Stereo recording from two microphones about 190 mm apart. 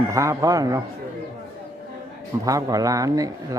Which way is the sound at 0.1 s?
15° right (ahead or behind).